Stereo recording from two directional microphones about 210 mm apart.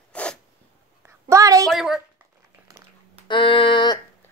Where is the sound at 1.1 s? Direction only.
15° right (ahead or behind).